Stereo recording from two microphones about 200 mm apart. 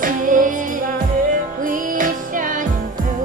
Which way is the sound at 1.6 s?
40° right (ahead or behind).